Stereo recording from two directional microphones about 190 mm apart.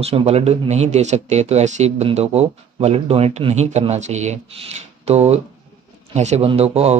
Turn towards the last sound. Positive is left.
turn(degrees=-35)  # may be behind; listen again after turning